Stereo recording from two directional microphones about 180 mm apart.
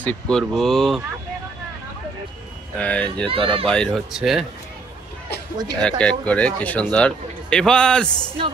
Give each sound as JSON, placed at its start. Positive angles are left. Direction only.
{"t": 0.0, "sound": "speech", "side_deg": 5}
{"t": 2.8, "sound": "speech", "side_deg": 5}
{"t": 3.3, "sound": "speech", "side_deg": -30}
{"t": 3.6, "sound": "speech", "side_deg": 5}
{"t": 5.8, "sound": "speech", "side_deg": 5}